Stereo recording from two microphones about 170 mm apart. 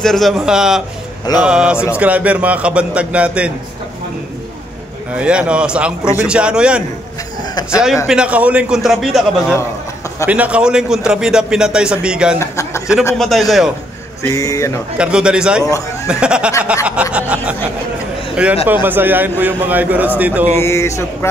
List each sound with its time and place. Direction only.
0.0 s a man's voice: centre (ahead or behind)
5.1 s a man's voice: 5° right (ahead or behind)
12.4 s a sound: 15° left (ahead or behind)
13.2 s a man's voice: centre (ahead or behind)
14.2 s speech: 20° left (ahead or behind)
15.0 s a man's voice: 5° right (ahead or behind)
15.6 s speech: 20° left (ahead or behind)
16.1 s a man's voice: 5° right (ahead or behind)
16.8 s a sound: 5° right (ahead or behind)
18.3 s a man's voice: 5° right (ahead or behind)
20.5 s speech: 15° left (ahead or behind)